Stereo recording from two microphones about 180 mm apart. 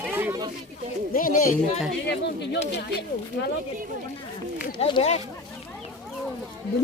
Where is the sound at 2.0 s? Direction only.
70° left (ahead or behind).